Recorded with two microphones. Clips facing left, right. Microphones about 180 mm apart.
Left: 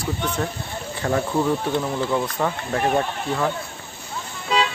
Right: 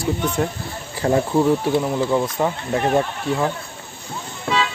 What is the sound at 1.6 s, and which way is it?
Speech, 5° right (ahead or behind).